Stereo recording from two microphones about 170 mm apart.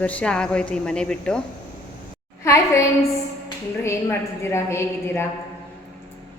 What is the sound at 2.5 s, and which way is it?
A woman's voice, 15° left (ahead or behind).